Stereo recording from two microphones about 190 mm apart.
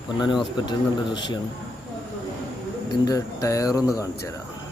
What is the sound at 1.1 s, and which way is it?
Speech, 25° left (ahead or behind).